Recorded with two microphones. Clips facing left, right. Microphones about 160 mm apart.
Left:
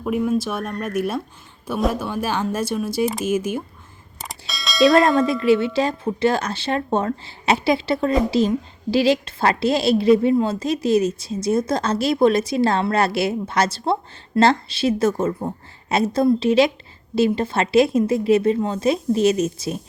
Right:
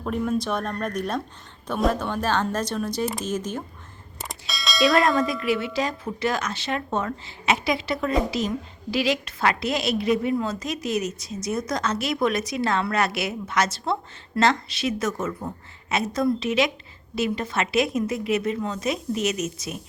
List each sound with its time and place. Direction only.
0.0 s speech: 5° left (ahead or behind)
4.2 s bell: centre (ahead or behind)
4.9 s speech: 25° left (ahead or behind)